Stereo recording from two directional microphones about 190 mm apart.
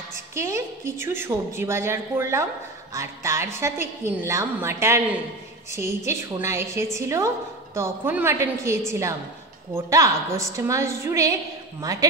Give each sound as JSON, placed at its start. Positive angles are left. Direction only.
{"t": 0.1, "sound": "a woman's voice", "side_deg": -15}